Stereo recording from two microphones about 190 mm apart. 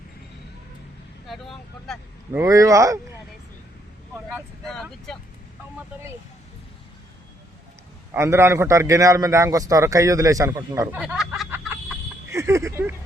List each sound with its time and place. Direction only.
1.3 s speech: centre (ahead or behind)
2.3 s a man's voice: 15° right (ahead or behind)
4.3 s speech: centre (ahead or behind)
8.1 s a man's voice: 15° right (ahead or behind)
12.3 s speech: 15° right (ahead or behind)